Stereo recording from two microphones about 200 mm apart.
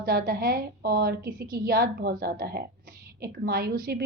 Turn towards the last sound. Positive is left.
turn(degrees=-50)  # may be behind; listen again after turning